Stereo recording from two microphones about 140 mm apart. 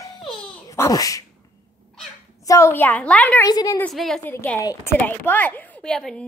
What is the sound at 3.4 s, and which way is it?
Speech, 25° left (ahead or behind).